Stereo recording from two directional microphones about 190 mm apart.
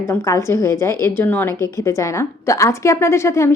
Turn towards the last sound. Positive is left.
turn(degrees=15)  # may be behind; listen again after turning